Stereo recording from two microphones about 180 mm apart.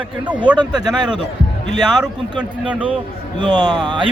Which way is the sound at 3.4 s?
25° right (ahead or behind).